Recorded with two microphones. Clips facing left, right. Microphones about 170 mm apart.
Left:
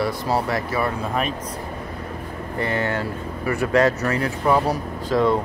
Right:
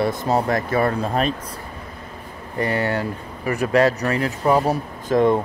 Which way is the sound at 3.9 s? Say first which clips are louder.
Right 1 dB; 35° right (ahead or behind).